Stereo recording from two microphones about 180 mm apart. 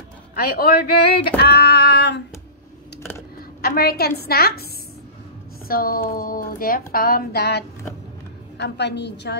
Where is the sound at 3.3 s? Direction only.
55° left (ahead or behind).